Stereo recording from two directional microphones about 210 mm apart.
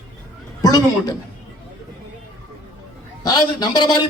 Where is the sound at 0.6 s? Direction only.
15° left (ahead or behind).